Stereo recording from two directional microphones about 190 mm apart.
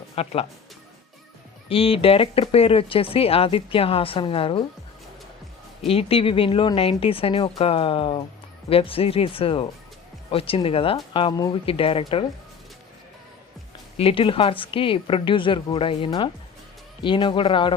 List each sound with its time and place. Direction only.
0.2 s speech: 30° left (ahead or behind)
1.7 s speech: 30° left (ahead or behind)
5.9 s speech: 30° left (ahead or behind)
13.9 s speech: 30° left (ahead or behind)